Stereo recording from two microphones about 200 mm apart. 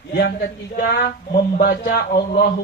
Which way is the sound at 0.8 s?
50° left (ahead or behind).